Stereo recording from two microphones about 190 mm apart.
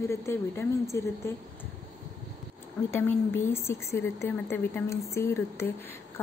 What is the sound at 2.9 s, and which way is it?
A woman's voice, 10° left (ahead or behind).